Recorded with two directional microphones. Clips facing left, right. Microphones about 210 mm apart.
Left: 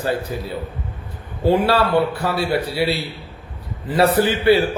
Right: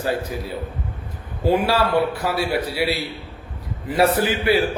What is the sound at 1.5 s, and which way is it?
Speech, 10° right (ahead or behind).